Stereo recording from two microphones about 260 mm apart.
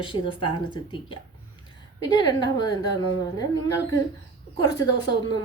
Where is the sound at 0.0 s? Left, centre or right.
Centre.